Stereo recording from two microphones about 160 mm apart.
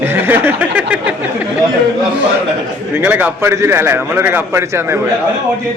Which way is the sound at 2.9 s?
10° right (ahead or behind).